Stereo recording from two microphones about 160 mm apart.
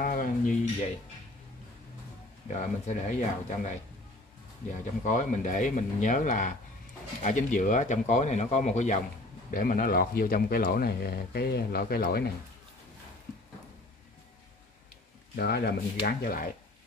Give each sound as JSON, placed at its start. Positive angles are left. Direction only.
{"t": 0.0, "sound": "speech", "side_deg": 60}
{"t": 2.4, "sound": "speech", "side_deg": 50}
{"t": 5.0, "sound": "speech", "side_deg": 50}
{"t": 9.5, "sound": "speech", "side_deg": 65}
{"t": 15.3, "sound": "speech", "side_deg": 80}